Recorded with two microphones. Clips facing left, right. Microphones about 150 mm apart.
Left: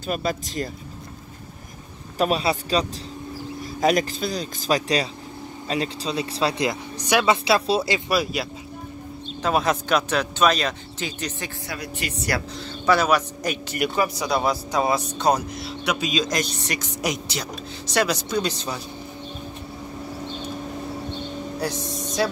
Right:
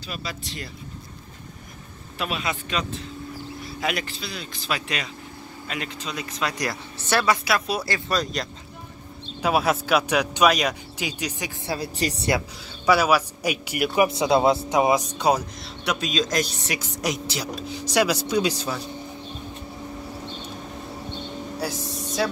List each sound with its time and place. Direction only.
0.0 s speech: 50° left (ahead or behind)
2.1 s speech: 40° left (ahead or behind)
6.7 s speech: 15° left (ahead or behind)
7.4 s speech: 25° left (ahead or behind)
8.1 s speech: 10° left (ahead or behind)
9.4 s speech: 5° right (ahead or behind)
11.6 s speech: 30° right (ahead or behind)
12.3 s speech: 15° right (ahead or behind)
13.9 s speech: 25° right (ahead or behind)
15.6 s speech: centre (ahead or behind)
21.5 s a sound: 5° right (ahead or behind)